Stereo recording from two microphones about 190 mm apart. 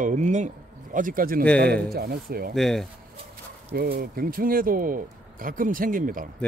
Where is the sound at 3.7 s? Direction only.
50° right (ahead or behind).